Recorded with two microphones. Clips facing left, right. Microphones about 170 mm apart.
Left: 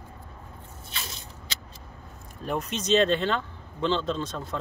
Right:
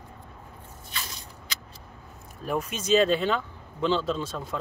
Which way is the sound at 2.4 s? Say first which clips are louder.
Even; 5° right (ahead or behind).